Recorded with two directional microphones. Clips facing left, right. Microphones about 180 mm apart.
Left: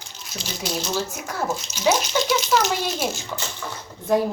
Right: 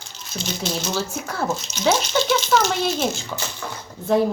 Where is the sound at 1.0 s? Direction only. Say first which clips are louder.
Right 1 dB; 15° left (ahead or behind).